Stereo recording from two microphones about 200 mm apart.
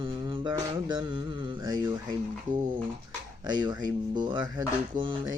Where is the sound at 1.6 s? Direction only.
20° right (ahead or behind).